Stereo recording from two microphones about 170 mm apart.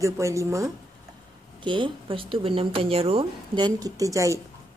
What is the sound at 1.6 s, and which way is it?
Speech, 30° right (ahead or behind).